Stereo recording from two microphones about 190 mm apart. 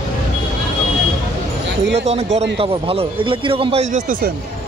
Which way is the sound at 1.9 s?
35° right (ahead or behind).